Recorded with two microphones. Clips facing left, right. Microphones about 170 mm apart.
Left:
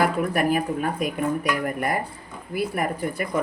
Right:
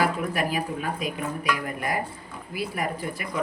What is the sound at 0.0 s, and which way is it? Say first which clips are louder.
Speech: left 4 dB; 50° left (ahead or behind).